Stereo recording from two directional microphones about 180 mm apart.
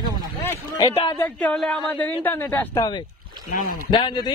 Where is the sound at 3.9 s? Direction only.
25° left (ahead or behind).